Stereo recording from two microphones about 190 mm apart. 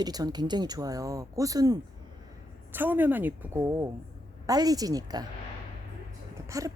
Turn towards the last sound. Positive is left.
turn(degrees=-20)  # may be behind; listen again after turning